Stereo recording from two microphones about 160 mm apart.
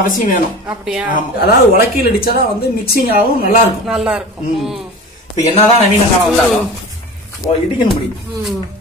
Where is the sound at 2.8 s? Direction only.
70° left (ahead or behind).